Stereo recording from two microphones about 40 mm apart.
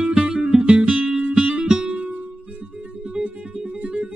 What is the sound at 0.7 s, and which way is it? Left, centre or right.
Music, right.